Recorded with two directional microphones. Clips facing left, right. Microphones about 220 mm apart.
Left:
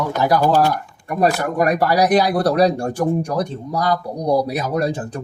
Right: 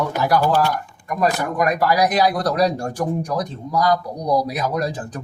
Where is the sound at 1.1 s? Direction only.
30° left (ahead or behind).